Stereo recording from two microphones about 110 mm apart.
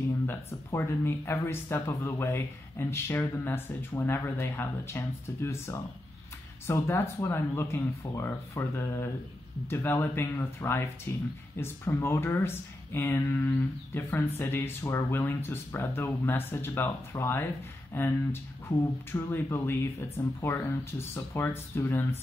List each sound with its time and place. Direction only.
0.3 s speech: 20° left (ahead or behind)